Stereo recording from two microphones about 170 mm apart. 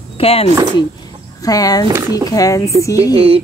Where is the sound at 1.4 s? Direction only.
20° left (ahead or behind).